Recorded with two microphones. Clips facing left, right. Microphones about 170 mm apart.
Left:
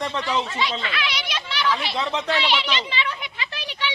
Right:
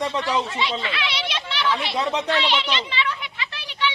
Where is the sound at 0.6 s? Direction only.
25° right (ahead or behind).